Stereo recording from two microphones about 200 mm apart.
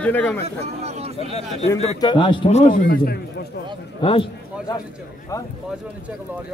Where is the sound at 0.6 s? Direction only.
30° right (ahead or behind).